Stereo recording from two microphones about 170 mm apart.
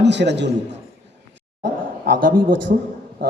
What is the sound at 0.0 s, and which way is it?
Speech, 90° right.